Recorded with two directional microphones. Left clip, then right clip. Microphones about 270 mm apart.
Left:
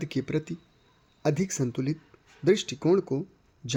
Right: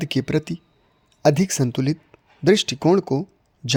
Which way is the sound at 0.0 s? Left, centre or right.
Right.